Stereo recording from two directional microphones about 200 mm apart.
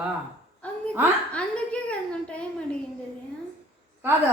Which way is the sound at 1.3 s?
5° left (ahead or behind).